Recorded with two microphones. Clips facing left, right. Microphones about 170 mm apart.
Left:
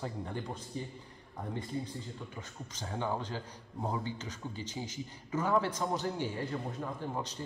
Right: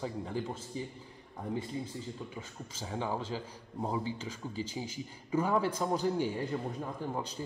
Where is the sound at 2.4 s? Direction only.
5° right (ahead or behind).